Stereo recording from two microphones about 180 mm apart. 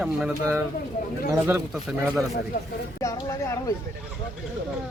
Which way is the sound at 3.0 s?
15° left (ahead or behind).